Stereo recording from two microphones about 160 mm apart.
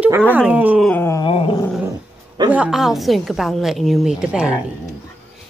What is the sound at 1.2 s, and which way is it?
Dog, 35° left (ahead or behind).